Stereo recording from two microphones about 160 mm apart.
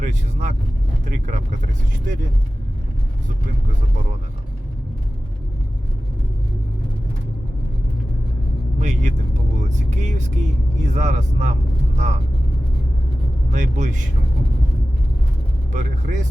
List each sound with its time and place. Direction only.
0.0 s vehicle: 50° right (ahead or behind)
1.0 s speech: 50° right (ahead or behind)
8.8 s vehicle: 50° right (ahead or behind)
9.6 s speech: 50° right (ahead or behind)
13.5 s speech: 50° right (ahead or behind)
15.7 s speech: 50° right (ahead or behind)